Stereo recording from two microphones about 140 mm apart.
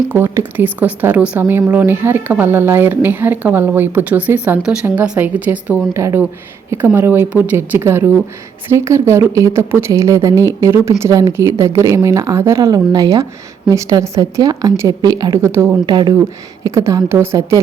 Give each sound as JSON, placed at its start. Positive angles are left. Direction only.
{"t": 0.1, "sound": "speech", "side_deg": -15}
{"t": 15.9, "sound": "speech", "side_deg": -30}